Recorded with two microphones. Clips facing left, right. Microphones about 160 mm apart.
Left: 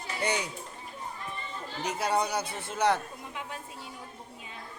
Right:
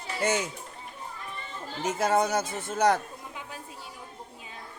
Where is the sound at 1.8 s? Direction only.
45° right (ahead or behind).